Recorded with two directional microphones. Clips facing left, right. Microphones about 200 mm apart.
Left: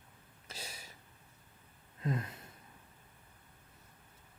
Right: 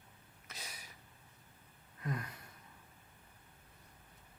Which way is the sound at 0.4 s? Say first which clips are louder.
Left 4 dB; 30° left (ahead or behind).